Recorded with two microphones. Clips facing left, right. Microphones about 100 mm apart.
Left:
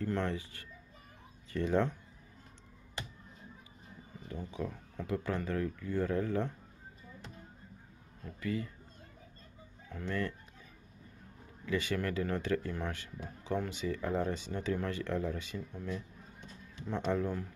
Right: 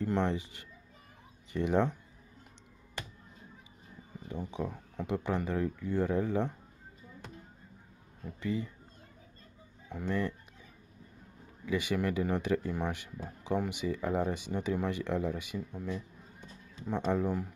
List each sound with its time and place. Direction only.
0.0 s speech: 20° right (ahead or behind)
4.3 s speech: 20° right (ahead or behind)
8.4 s speech: 20° right (ahead or behind)
9.8 s speech: 15° right (ahead or behind)
11.6 s speech: 15° right (ahead or behind)